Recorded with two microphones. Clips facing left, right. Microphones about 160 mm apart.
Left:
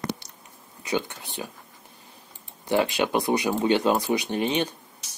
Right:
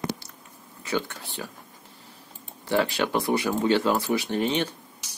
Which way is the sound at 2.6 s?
15° left (ahead or behind).